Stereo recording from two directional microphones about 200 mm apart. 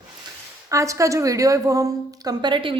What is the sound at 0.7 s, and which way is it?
A woman's voice, 15° right (ahead or behind).